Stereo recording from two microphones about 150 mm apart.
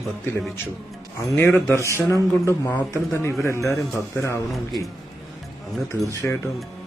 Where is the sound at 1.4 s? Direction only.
15° left (ahead or behind).